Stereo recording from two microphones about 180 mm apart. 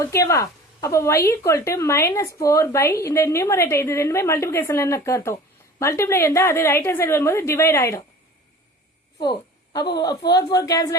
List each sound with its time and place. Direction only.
0.0 s a woman's voice: 15° left (ahead or behind)
9.2 s a woman's voice: 20° left (ahead or behind)